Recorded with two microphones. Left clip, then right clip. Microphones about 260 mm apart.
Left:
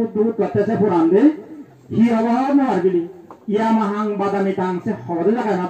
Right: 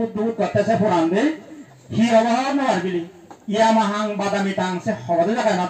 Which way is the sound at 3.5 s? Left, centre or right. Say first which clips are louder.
Right 2 dB; right.